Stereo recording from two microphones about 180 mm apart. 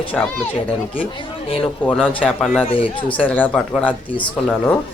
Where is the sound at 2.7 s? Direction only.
30° left (ahead or behind).